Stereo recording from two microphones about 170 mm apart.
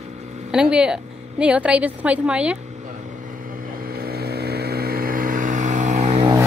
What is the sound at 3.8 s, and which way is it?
Vehicle, 65° right (ahead or behind).